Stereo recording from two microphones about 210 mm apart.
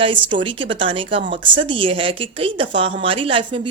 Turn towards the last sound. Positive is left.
turn(degrees=-25)  # may be behind; listen again after turning